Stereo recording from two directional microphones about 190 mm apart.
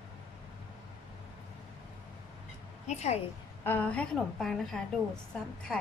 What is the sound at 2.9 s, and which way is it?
Speech, 35° left (ahead or behind).